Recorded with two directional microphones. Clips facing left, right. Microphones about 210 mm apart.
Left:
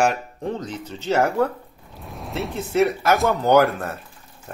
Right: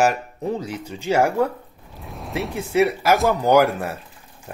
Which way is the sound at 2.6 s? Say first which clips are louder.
Right 1 dB; 10° right (ahead or behind).